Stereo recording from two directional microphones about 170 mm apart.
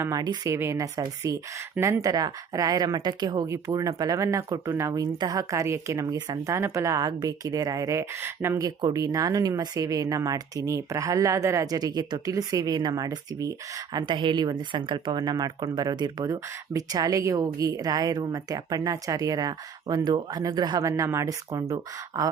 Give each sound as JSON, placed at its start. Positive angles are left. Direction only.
{"t": 0.0, "sound": "speech", "side_deg": -20}